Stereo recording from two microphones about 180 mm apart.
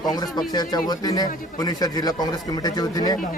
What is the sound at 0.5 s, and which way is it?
A man's voice, 20° left (ahead or behind).